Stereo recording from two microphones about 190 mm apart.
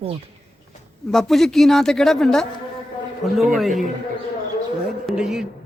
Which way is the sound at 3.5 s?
Centre (ahead or behind).